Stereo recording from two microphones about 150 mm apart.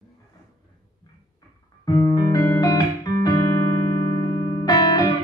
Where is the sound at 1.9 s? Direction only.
25° left (ahead or behind).